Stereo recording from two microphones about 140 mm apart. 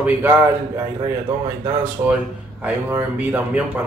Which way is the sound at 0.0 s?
10° right (ahead or behind).